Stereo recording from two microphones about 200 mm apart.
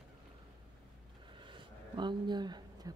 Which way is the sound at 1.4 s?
25° right (ahead or behind).